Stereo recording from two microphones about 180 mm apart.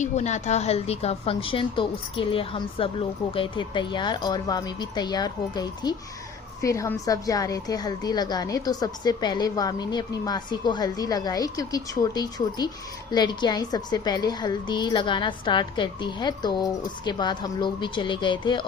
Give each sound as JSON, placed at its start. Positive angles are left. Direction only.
{"t": 0.0, "sound": "a woman's voice", "side_deg": 40}